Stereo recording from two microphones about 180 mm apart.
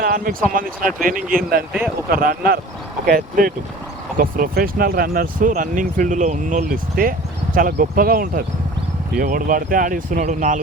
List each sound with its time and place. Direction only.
0.0 s speech: 50° right (ahead or behind)
6.9 s clip-clop: 50° right (ahead or behind)
7.8 s speech: 55° right (ahead or behind)